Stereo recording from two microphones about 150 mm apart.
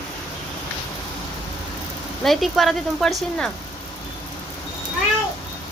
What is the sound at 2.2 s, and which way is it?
Speech, centre (ahead or behind).